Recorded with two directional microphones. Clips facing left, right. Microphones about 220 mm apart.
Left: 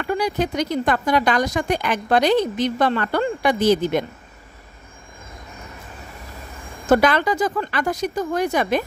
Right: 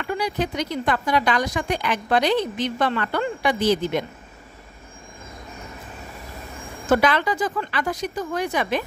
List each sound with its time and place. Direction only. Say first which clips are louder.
0.0 s speech: left 3 dB; 45° left (ahead or behind)
6.9 s speech: left 3 dB; 45° left (ahead or behind)